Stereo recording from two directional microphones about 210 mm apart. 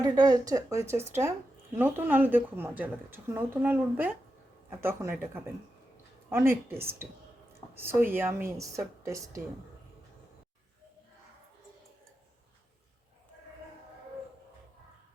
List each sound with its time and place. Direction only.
0.0 s a woman's voice: 20° right (ahead or behind)